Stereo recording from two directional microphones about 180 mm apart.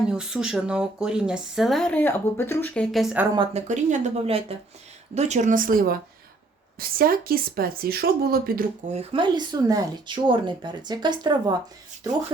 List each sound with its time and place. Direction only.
0.0 s speech: 5° right (ahead or behind)
3.3 s speech: 30° right (ahead or behind)
3.7 s a woman's voice: 45° right (ahead or behind)
8.9 s speech: 30° right (ahead or behind)